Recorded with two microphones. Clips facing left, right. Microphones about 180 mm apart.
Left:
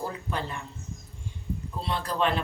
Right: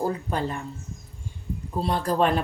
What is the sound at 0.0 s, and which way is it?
Speech, 45° right (ahead or behind).